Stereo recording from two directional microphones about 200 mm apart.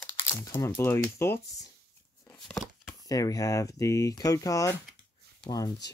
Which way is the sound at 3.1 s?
15° left (ahead or behind).